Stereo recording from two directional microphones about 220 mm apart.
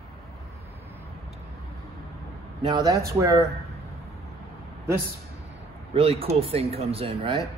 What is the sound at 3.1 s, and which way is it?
Speech, 15° right (ahead or behind).